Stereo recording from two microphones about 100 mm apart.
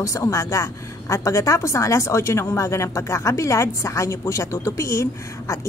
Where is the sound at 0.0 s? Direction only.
30° left (ahead or behind).